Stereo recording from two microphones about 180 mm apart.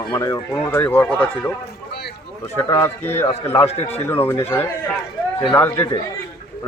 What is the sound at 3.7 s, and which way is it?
Speech, 35° left (ahead or behind).